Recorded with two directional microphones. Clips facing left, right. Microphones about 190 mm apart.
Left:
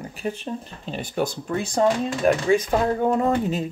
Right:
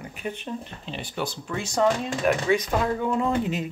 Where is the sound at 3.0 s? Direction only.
45° left (ahead or behind).